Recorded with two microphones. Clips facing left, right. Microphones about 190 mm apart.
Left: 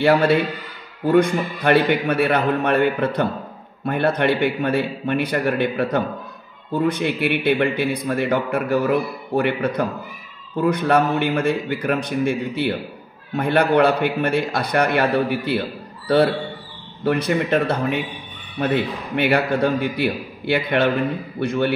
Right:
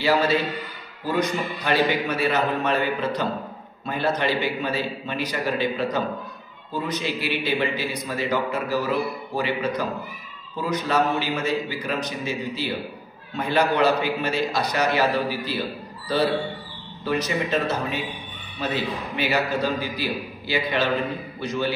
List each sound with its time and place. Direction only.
0.0 s a man's voice: 55° left (ahead or behind)
17.0 s a man's voice: 55° left (ahead or behind)